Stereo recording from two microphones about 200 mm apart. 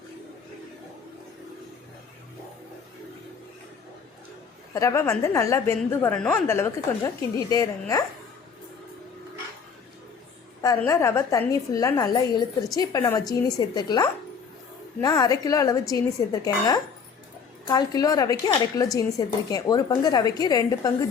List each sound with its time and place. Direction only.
4.7 s a woman's voice: 15° left (ahead or behind)
10.6 s a woman's voice: 15° left (ahead or behind)